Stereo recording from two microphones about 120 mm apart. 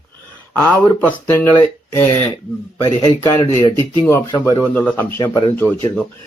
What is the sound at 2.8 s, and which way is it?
Speech, 25° left (ahead or behind).